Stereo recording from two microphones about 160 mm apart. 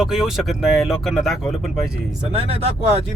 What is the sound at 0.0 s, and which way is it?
Speech, 5° right (ahead or behind).